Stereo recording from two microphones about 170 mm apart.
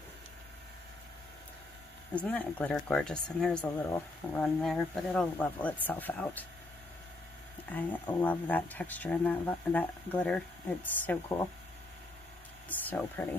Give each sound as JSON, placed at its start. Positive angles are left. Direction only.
{"t": 2.1, "sound": "speech", "side_deg": 10}
{"t": 7.7, "sound": "speech", "side_deg": 10}
{"t": 12.6, "sound": "speech", "side_deg": 10}